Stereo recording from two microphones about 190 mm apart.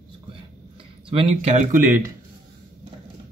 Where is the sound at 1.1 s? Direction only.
35° right (ahead or behind).